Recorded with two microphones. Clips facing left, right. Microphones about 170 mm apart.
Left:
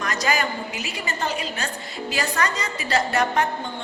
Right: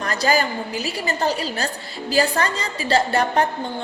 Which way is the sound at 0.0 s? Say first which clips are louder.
Right 4 dB; 30° right (ahead or behind).